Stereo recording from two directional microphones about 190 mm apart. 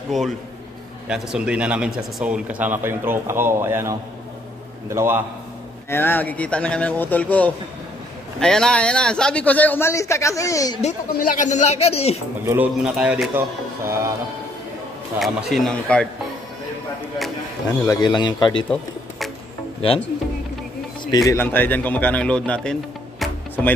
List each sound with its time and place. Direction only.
1.0 s speech: 5° right (ahead or behind)
5.9 s speech: 10° left (ahead or behind)
11.1 s speech: 45° left (ahead or behind)
12.4 s speech: 5° right (ahead or behind)
15.1 s speech: centre (ahead or behind)
17.8 s a man's voice: 25° left (ahead or behind)
18.7 s music: centre (ahead or behind)
21.3 s speech: 10° left (ahead or behind)